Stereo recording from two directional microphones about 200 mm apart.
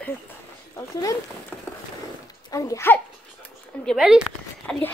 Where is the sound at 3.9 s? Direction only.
5° right (ahead or behind).